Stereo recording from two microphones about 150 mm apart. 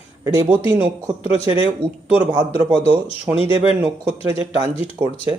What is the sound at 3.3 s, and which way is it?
Speech, 15° right (ahead or behind).